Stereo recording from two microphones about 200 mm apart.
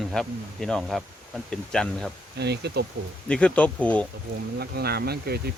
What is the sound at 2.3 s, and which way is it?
Speech, 55° right (ahead or behind).